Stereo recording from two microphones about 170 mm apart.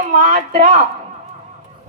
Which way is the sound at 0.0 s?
40° right (ahead or behind).